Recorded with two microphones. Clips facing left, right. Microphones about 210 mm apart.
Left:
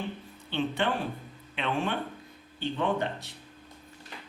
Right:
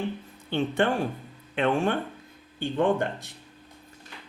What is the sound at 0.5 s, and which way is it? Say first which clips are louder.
Speech: right 4 dB; 45° right (ahead or behind).